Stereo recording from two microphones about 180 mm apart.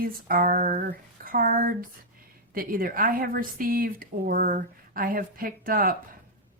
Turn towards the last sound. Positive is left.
turn(degrees=-55)  # may be behind; listen again after turning